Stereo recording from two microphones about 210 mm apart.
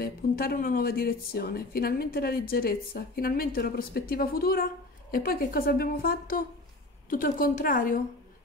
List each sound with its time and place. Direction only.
0.0 s a woman's voice: 45° left (ahead or behind)